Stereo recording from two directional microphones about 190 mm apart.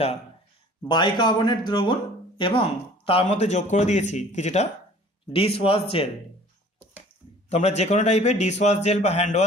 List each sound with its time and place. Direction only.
0.8 s a man's voice: 25° left (ahead or behind)
7.4 s a man's voice: 35° left (ahead or behind)